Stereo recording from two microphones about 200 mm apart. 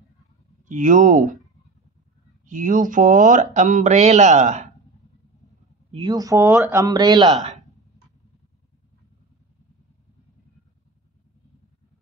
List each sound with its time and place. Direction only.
0.7 s speech: 40° right (ahead or behind)
2.4 s speech: 40° right (ahead or behind)
5.9 s speech: 25° right (ahead or behind)